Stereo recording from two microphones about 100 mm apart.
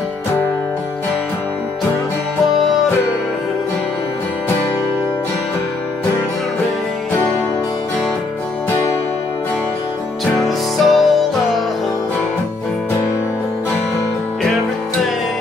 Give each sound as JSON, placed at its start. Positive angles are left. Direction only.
{"t": 10.8, "sound": "music", "side_deg": 0}